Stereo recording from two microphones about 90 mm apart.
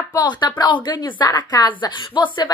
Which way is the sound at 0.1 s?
50° left (ahead or behind).